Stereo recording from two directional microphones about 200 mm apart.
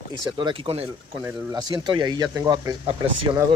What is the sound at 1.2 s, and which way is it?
Speech, 15° right (ahead or behind).